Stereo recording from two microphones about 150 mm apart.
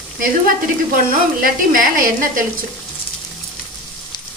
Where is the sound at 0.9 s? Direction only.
70° right (ahead or behind).